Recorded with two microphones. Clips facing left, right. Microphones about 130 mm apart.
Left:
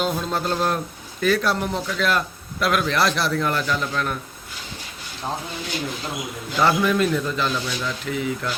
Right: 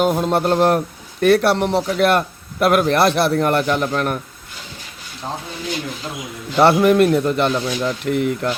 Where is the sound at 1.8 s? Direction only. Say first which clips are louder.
Right 6 dB; 55° right (ahead or behind).